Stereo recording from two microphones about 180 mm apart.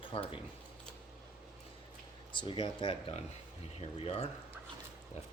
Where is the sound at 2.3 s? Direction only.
25° left (ahead or behind).